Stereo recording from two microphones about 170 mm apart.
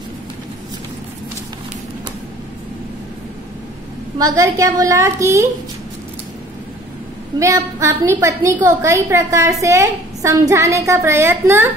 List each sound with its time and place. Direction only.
4.2 s a woman's voice: 20° right (ahead or behind)
7.3 s a woman's voice: 20° right (ahead or behind)